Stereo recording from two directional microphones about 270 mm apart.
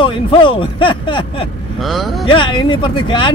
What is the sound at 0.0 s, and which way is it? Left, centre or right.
Speech, centre.